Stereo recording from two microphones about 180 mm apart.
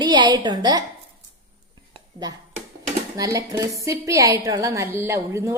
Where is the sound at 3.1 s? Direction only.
20° right (ahead or behind).